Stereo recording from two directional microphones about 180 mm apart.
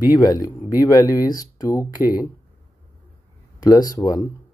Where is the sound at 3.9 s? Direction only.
20° left (ahead or behind).